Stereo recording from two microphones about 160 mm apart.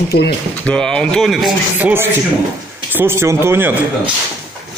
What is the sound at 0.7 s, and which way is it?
Speech, 5° left (ahead or behind).